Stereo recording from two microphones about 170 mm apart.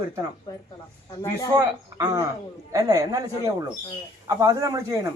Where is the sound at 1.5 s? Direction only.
20° right (ahead or behind).